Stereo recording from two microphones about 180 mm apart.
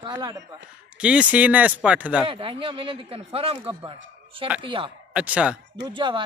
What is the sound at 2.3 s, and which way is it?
Speech, 30° right (ahead or behind).